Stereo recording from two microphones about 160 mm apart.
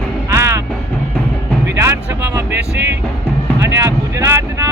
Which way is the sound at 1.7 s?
15° right (ahead or behind).